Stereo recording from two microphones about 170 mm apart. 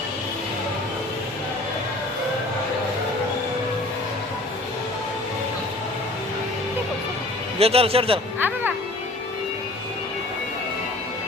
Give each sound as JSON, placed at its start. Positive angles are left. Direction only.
{"t": 7.6, "sound": "speech", "side_deg": -35}
{"t": 8.4, "sound": "speech", "side_deg": -10}